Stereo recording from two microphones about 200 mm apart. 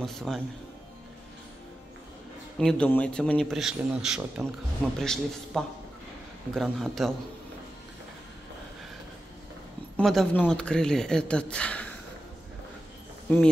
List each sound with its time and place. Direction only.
0.0 s speech: centre (ahead or behind)
2.6 s speech: 5° left (ahead or behind)
9.9 s speech: 5° left (ahead or behind)